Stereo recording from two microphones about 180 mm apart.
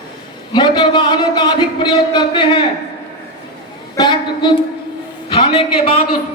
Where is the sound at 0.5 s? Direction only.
25° left (ahead or behind).